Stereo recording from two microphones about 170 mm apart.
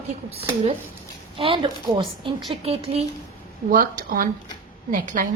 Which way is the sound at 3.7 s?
55° right (ahead or behind).